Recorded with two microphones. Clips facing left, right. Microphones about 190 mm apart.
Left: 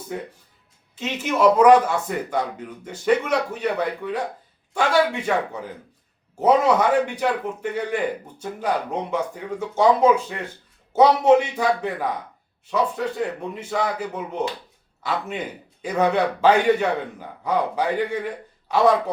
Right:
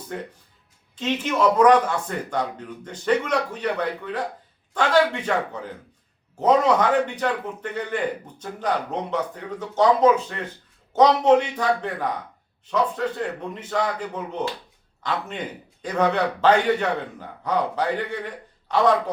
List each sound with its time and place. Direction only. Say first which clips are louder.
0.9 s a man's voice: even; 10° left (ahead or behind)